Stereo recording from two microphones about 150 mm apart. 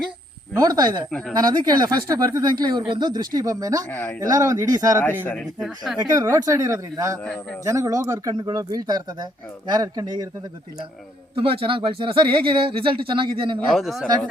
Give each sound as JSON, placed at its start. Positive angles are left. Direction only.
{"t": 0.5, "sound": "speech", "side_deg": -25}
{"t": 3.8, "sound": "speech", "side_deg": 10}
{"t": 4.2, "sound": "speech", "side_deg": -20}
{"t": 5.2, "sound": "speech", "side_deg": 10}
{"t": 5.5, "sound": "speech", "side_deg": 0}
{"t": 6.0, "sound": "speech", "side_deg": -25}
{"t": 11.3, "sound": "speech", "side_deg": -35}
{"t": 13.7, "sound": "speech", "side_deg": 0}